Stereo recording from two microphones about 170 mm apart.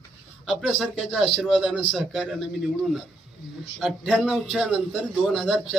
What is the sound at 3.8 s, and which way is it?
A man's voice, centre (ahead or behind).